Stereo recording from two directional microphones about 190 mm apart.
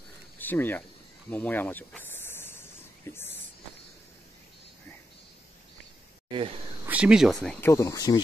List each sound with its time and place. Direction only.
0.4 s speech: 10° left (ahead or behind)
1.3 s snake: 10° left (ahead or behind)
3.1 s speech: 10° left (ahead or behind)
6.2 s speech: 25° right (ahead or behind)
6.9 s speech: 5° right (ahead or behind)
7.4 s speech: 15° left (ahead or behind)